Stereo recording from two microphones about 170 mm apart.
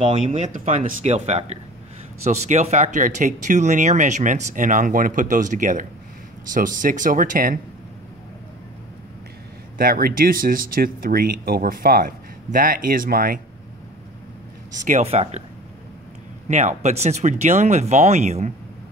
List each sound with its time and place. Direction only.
0.0 s speech: 40° right (ahead or behind)
9.8 s speech: 60° right (ahead or behind)
14.7 s speech: 45° right (ahead or behind)
16.4 s speech: 40° right (ahead or behind)